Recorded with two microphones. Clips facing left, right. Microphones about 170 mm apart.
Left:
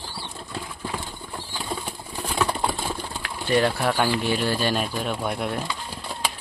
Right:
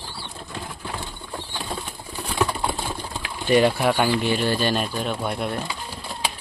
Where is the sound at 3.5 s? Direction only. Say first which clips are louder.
Right 3 dB; 15° right (ahead or behind); by 5.6 s centre (ahead or behind).